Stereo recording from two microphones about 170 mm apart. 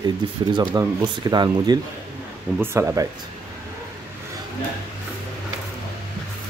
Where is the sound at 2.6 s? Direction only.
15° right (ahead or behind).